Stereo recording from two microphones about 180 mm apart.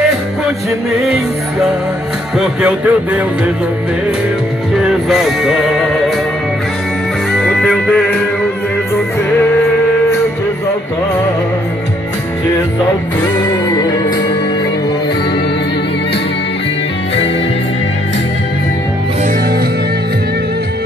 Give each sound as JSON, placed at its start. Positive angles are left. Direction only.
{"t": 0.9, "sound": "speech", "side_deg": 0}
{"t": 4.8, "sound": "music", "side_deg": 0}
{"t": 7.3, "sound": "music", "side_deg": 5}
{"t": 13.2, "sound": "music", "side_deg": 20}